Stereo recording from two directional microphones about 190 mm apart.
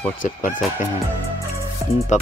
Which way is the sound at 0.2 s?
45° left (ahead or behind).